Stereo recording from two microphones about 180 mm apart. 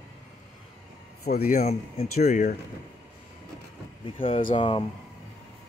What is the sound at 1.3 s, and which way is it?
Speech, 55° left (ahead or behind).